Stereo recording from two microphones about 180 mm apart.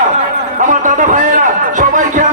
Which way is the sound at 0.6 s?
45° right (ahead or behind).